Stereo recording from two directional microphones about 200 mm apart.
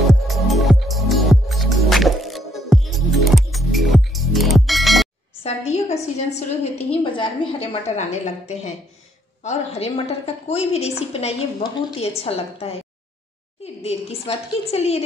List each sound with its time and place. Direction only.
0.1 s music: centre (ahead or behind)
5.4 s a sound: 30° left (ahead or behind)
6.1 s a woman's voice: 30° left (ahead or behind)
13.8 s a woman's voice: 30° left (ahead or behind)